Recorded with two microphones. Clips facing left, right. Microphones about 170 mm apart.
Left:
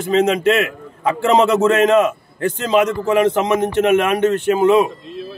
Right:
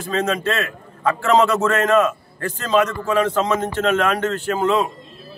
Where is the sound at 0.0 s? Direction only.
20° left (ahead or behind).